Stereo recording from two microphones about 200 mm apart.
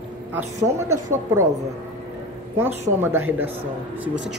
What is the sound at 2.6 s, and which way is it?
Speech, 10° right (ahead or behind).